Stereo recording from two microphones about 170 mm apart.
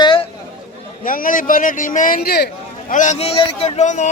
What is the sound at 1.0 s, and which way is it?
A man's voice, 55° left (ahead or behind).